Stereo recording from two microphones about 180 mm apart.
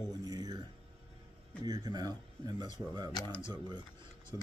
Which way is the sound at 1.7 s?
20° right (ahead or behind).